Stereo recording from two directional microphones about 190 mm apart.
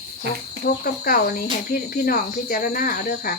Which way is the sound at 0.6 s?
50° left (ahead or behind).